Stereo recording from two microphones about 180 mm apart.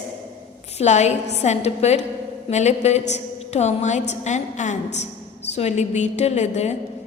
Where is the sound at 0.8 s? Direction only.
40° left (ahead or behind).